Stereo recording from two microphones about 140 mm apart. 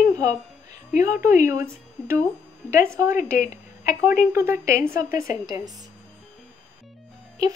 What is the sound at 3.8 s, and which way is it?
Speech, 70° left (ahead or behind).